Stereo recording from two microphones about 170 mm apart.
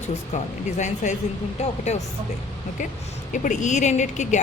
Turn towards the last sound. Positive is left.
turn(degrees=45)  # may be behind; listen again after turning